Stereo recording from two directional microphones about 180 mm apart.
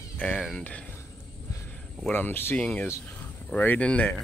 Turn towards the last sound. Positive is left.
turn(degrees=10)  # may be behind; listen again after turning